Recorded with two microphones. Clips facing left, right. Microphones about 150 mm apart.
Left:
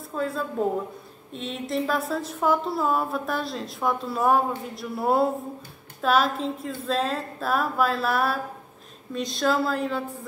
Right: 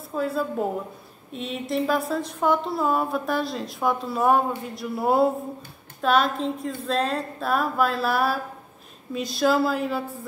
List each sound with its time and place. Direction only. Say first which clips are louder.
0.1 s a woman's voice: right 3 dB; 5° right (ahead or behind)